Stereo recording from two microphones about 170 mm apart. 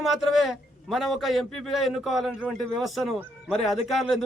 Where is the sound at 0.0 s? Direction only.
Centre (ahead or behind).